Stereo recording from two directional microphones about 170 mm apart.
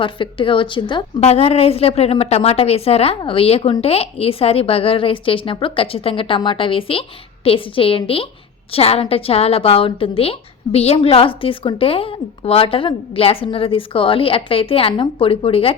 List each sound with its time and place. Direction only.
0.0 s a woman's voice: 30° left (ahead or behind)